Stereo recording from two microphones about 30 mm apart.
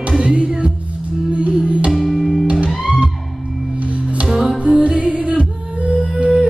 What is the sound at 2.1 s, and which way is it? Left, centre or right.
Music, centre.